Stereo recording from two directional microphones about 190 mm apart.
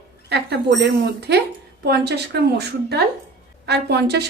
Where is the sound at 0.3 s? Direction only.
60° right (ahead or behind).